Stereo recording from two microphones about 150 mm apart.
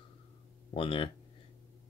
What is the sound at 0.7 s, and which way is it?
Speech, 35° left (ahead or behind).